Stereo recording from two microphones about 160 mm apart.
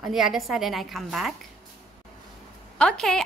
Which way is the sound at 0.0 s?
Centre (ahead or behind).